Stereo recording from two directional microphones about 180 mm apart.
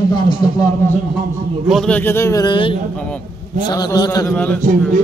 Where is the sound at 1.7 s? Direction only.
5° left (ahead or behind); by 4.4 s 20° left (ahead or behind).